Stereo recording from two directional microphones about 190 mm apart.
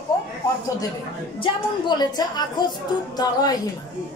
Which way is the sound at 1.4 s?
20° left (ahead or behind).